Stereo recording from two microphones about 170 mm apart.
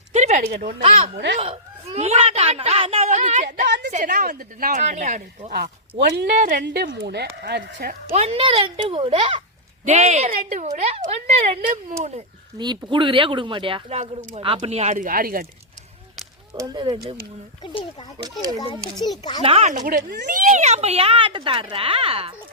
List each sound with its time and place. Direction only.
0.1 s a sound: 45° right (ahead or behind)
1.1 s speech: 90° right
1.4 s a woman's voice: 35° right (ahead or behind)
6.0 s speech: 80° right
6.3 s a woman's voice: 50° right (ahead or behind)
6.9 s speech: 75° right (ahead or behind)
8.1 s a woman's voice: 35° right (ahead or behind)
12.5 s speech: 25° right (ahead or behind)
14.9 s speech: 55° right (ahead or behind)
16.6 s speech: 25° right (ahead or behind)
17.6 s a child's voice: 30° left (ahead or behind)
19.4 s a woman's voice: 35° right (ahead or behind)